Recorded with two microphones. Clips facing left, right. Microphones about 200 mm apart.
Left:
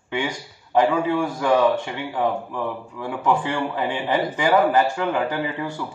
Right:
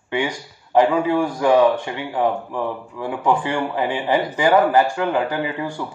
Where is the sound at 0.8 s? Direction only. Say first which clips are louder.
Right 3 dB; 20° right (ahead or behind).